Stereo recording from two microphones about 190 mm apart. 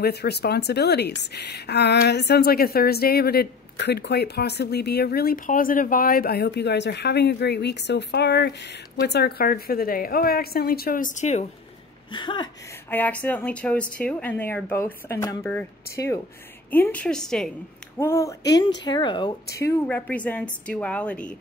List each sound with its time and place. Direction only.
0.0 s a woman's voice: 60° left (ahead or behind); by 11.4 s 35° left (ahead or behind)
12.1 s speech: 25° left (ahead or behind)
12.9 s a woman's voice: 10° left (ahead or behind)
17.9 s speech: 15° left (ahead or behind)
19.6 s speech: 10° left (ahead or behind)